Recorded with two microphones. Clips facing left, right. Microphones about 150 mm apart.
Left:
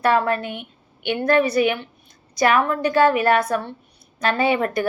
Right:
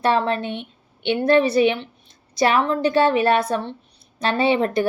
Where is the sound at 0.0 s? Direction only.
25° right (ahead or behind).